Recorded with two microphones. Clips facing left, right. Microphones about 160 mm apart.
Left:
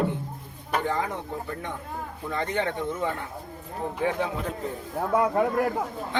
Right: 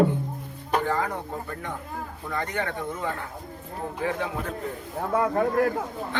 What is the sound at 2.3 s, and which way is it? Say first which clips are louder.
Speech: left 2 dB; 20° left (ahead or behind).